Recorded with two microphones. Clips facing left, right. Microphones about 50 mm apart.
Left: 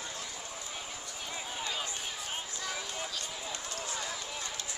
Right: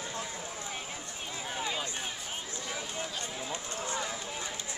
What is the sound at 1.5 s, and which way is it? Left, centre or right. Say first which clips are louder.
Run: right 4 dB; centre.